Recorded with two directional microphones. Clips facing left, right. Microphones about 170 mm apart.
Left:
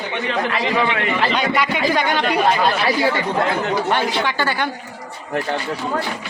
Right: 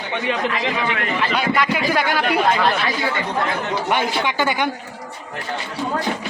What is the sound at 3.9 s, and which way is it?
Speech, 15° right (ahead or behind).